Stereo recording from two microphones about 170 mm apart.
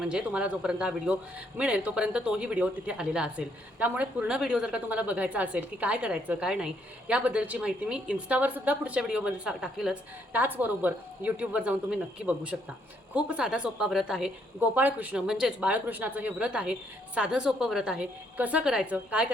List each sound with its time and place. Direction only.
0.0 s a man's voice: 5° right (ahead or behind)